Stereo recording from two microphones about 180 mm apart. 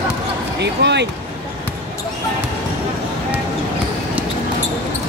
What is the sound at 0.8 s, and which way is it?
Speech, 75° right (ahead or behind).